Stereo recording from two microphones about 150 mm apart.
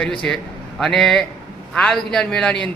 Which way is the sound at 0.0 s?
5° left (ahead or behind).